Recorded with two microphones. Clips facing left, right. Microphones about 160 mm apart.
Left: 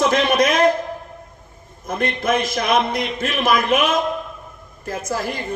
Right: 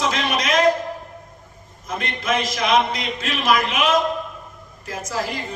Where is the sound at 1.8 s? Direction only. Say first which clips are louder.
Left 4 dB; 55° left (ahead or behind).